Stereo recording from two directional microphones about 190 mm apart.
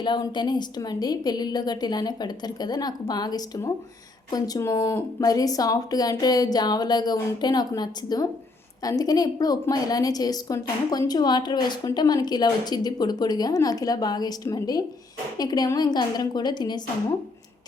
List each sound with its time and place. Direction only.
0.0 s a woman's voice: 25° left (ahead or behind)